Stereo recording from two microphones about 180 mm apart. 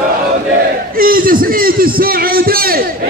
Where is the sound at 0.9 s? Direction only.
50° right (ahead or behind).